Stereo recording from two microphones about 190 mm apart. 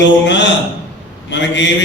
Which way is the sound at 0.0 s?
70° left (ahead or behind).